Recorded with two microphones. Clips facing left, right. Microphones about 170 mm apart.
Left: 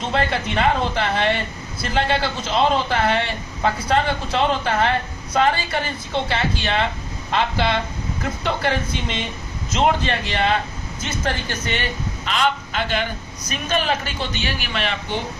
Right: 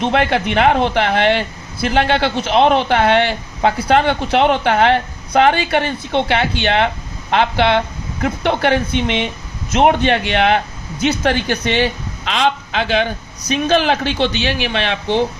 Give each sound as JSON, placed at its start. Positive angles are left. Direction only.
{"t": 0.0, "sound": "a woman's voice", "side_deg": -70}